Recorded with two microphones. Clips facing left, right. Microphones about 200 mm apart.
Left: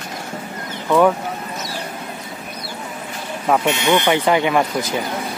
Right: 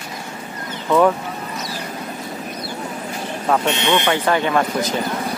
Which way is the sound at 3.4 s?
5° left (ahead or behind).